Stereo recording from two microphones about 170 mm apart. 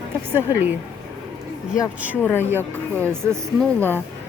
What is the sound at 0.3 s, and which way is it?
Speech, 10° right (ahead or behind).